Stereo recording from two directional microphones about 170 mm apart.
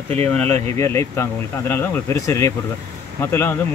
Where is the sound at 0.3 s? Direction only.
10° left (ahead or behind).